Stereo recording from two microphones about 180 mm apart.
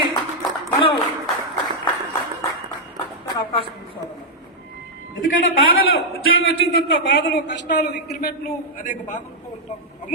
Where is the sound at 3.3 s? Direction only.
30° left (ahead or behind).